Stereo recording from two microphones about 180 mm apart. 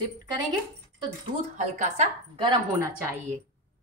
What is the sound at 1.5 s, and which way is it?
Speech, 40° right (ahead or behind).